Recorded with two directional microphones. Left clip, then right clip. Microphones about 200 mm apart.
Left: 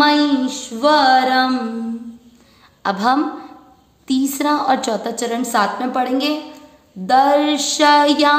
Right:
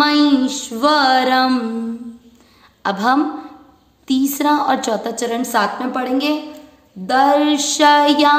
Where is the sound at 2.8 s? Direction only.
Centre (ahead or behind).